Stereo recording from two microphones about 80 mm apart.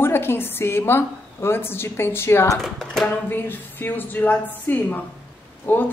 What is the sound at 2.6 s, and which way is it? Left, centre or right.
Speech, centre.